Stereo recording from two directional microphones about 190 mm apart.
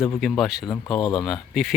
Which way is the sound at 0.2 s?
Centre (ahead or behind).